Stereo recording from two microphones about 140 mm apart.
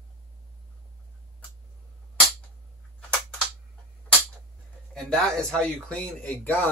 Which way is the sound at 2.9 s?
10° left (ahead or behind).